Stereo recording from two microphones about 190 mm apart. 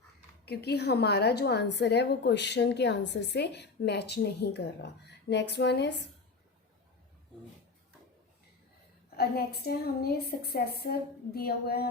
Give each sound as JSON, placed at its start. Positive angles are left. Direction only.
{"t": 0.4, "sound": "a woman's voice", "side_deg": 60}
{"t": 9.0, "sound": "a woman's voice", "side_deg": 55}
{"t": 11.3, "sound": "a sound", "side_deg": 55}